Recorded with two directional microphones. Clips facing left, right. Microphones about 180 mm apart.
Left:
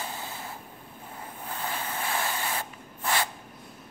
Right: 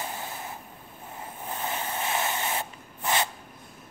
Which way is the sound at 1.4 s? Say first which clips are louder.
Right 2 dB; 20° right (ahead or behind).